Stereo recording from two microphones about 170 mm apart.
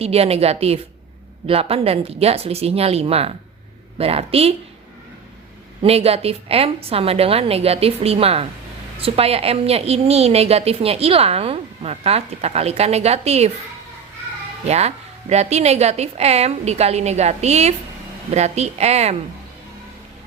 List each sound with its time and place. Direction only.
0.0 s a woman's voice: 35° right (ahead or behind)
5.8 s a woman's voice: 35° right (ahead or behind)
14.6 s a woman's voice: 40° right (ahead or behind)